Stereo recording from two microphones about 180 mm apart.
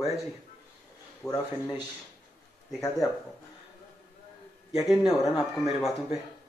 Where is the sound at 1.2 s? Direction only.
Centre (ahead or behind).